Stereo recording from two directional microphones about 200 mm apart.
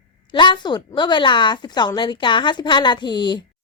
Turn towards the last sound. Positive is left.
turn(degrees=20)  # may be behind; listen again after turning